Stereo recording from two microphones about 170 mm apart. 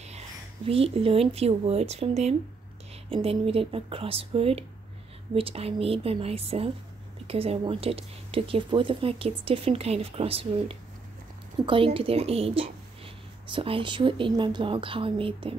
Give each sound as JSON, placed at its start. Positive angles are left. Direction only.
{"t": 0.7, "sound": "speech", "side_deg": -35}